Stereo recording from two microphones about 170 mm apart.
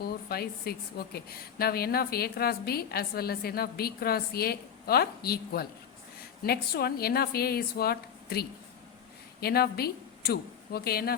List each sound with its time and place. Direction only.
0.0 s a woman's voice: 65° left (ahead or behind)